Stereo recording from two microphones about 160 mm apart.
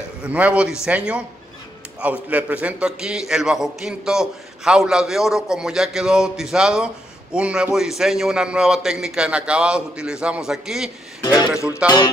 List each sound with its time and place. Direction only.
0.3 s a man's voice: 10° right (ahead or behind)